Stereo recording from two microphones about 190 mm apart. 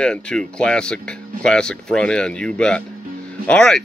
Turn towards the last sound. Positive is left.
turn(degrees=5)  # may be behind; listen again after turning